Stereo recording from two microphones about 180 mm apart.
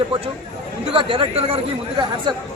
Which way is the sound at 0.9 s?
30° right (ahead or behind).